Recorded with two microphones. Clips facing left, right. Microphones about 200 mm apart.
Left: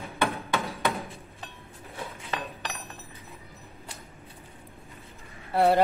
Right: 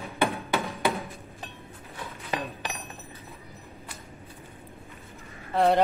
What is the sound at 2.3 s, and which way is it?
Chink, 15° right (ahead or behind).